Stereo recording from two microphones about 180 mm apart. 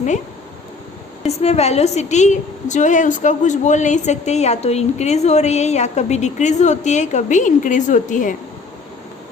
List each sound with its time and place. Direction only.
1.2 s a woman's voice: 35° left (ahead or behind)